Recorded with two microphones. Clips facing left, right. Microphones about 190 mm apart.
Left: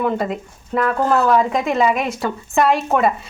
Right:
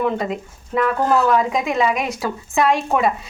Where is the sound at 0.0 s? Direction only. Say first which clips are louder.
Left 1 dB; centre (ahead or behind).